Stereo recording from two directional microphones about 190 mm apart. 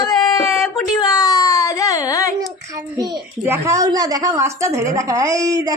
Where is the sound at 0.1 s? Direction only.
20° left (ahead or behind).